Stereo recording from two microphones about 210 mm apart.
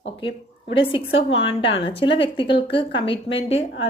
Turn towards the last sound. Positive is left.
turn(degrees=25)  # may be behind; listen again after turning